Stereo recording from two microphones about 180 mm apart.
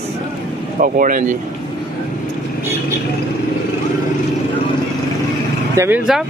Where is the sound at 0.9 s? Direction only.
50° right (ahead or behind).